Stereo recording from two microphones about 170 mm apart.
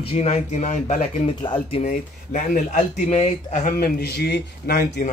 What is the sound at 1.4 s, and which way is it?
Speech, 30° left (ahead or behind).